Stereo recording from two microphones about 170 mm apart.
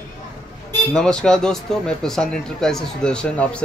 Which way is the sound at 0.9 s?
5° left (ahead or behind).